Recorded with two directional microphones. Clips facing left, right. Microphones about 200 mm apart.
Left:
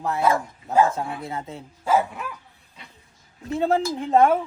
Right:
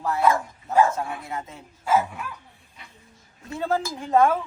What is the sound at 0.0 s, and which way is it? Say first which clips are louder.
Speech: even; 20° left (ahead or behind).